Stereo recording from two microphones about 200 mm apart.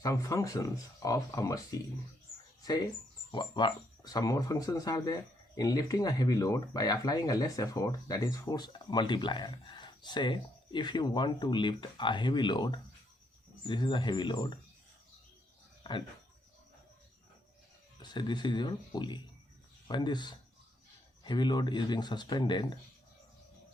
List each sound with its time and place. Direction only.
0.0 s speech: 15° left (ahead or behind)
3.3 s speech: 25° left (ahead or behind)
15.8 s a sound: 25° left (ahead or behind)
18.0 s speech: 20° left (ahead or behind)